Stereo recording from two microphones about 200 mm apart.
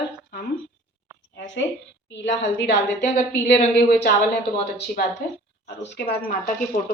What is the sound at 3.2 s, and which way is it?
Speech, 45° left (ahead or behind).